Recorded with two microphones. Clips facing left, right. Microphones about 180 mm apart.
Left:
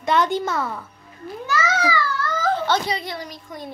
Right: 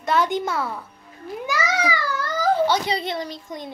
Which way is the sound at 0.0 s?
5° right (ahead or behind).